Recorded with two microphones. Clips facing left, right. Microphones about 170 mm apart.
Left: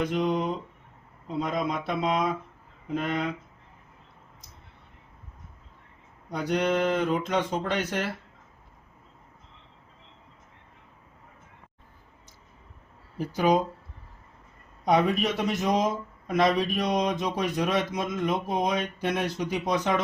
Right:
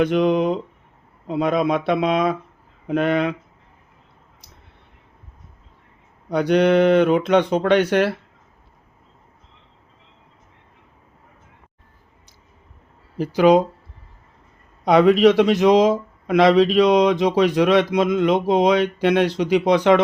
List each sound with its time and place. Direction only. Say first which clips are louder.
0.0 s speech: right 9 dB; 75° right (ahead or behind)
6.3 s speech: right 10 dB; 70° right (ahead or behind)
13.1 s speech: right 9 dB; 80° right
14.8 s speech: right 10 dB; 90° right